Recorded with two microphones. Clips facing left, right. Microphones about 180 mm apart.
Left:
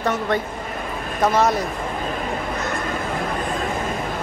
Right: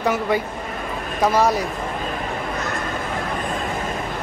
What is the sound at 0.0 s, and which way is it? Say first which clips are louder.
Speech: right 1 dB; 5° right (ahead or behind).